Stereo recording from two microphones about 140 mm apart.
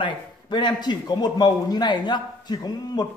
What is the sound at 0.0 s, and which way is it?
A man's voice, 30° left (ahead or behind).